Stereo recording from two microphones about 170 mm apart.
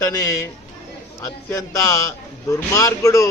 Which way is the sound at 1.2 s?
20° left (ahead or behind).